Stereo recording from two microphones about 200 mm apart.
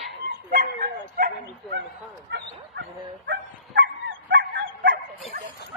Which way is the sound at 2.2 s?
60° right (ahead or behind).